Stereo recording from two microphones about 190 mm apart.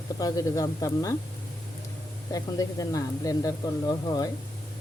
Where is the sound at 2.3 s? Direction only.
20° left (ahead or behind).